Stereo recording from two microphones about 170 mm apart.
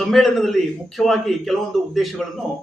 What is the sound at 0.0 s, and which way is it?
A man's voice, centre (ahead or behind).